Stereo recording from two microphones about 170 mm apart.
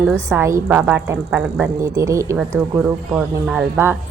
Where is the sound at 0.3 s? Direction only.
15° right (ahead or behind).